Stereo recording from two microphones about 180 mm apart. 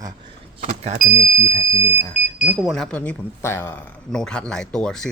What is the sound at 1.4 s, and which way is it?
Speech, 90° right.